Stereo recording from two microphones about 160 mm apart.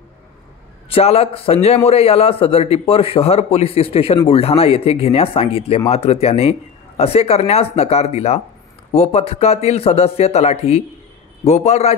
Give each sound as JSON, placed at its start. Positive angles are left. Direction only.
{"t": 0.8, "sound": "a man's voice", "side_deg": 35}